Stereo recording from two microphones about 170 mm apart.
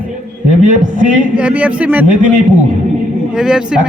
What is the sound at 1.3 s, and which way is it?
Speech, 10° right (ahead or behind).